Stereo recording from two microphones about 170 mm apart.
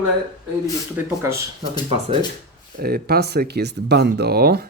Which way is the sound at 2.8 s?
65° right (ahead or behind).